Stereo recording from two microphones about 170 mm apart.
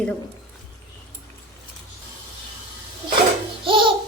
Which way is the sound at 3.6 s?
30° right (ahead or behind).